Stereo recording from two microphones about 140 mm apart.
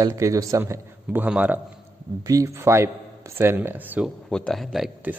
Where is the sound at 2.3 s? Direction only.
25° right (ahead or behind).